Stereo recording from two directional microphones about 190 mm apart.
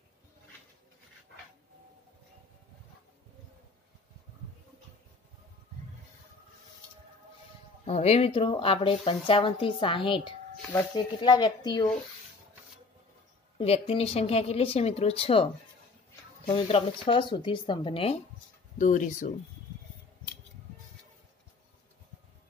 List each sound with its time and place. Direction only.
7.8 s speech: 35° left (ahead or behind)
13.6 s speech: 30° left (ahead or behind)
16.4 s speech: 30° left (ahead or behind)
18.8 s speech: 40° left (ahead or behind)